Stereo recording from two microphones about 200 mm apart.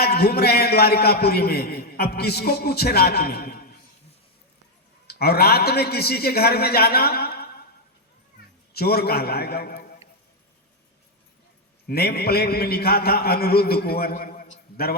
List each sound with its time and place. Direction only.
0.0 s a man's voice: 50° left (ahead or behind)
5.0 s a man's voice: 50° left (ahead or behind)
8.7 s a man's voice: 50° left (ahead or behind)
11.9 s a man's voice: 50° left (ahead or behind)